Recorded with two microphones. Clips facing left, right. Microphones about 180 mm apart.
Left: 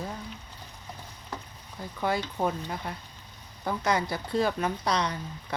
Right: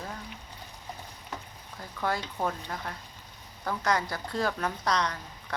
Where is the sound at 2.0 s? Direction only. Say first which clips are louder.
Left 2 dB; 15° left (ahead or behind).